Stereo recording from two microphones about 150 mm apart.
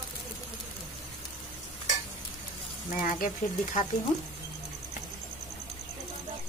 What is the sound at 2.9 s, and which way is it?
Speech, 65° left (ahead or behind).